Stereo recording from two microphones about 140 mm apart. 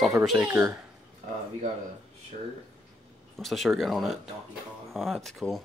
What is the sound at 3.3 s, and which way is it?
Speech, centre (ahead or behind).